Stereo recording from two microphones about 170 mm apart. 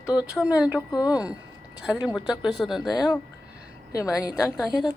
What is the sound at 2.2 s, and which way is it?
Speech, centre (ahead or behind).